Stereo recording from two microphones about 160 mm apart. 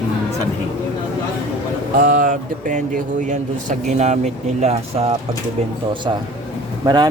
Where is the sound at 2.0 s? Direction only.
55° right (ahead or behind).